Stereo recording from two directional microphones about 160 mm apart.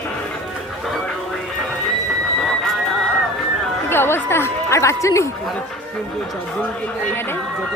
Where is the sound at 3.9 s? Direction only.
15° left (ahead or behind).